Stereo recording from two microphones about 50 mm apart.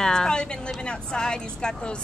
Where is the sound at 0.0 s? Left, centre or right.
Centre.